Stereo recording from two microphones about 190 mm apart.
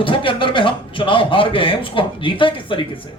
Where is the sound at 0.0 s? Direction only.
25° left (ahead or behind).